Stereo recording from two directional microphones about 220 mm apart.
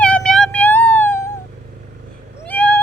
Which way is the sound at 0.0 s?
5° left (ahead or behind).